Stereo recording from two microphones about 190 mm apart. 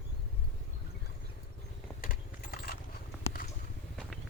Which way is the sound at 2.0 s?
50° left (ahead or behind).